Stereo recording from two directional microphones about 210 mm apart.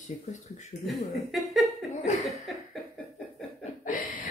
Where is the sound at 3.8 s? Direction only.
40° left (ahead or behind).